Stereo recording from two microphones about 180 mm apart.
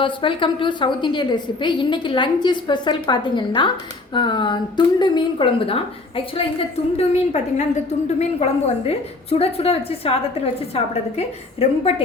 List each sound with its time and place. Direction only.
0.0 s a woman's voice: 30° left (ahead or behind)